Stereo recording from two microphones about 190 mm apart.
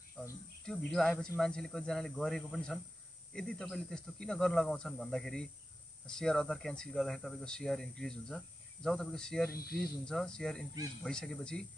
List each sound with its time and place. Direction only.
0.7 s speech: 5° left (ahead or behind)
9.5 s speech: 55° left (ahead or behind)
9.8 s speech: 5° left (ahead or behind)